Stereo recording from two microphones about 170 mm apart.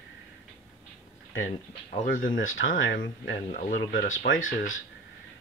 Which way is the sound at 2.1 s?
55° left (ahead or behind).